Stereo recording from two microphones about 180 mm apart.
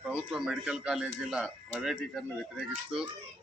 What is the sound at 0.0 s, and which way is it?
Speech, 5° right (ahead or behind).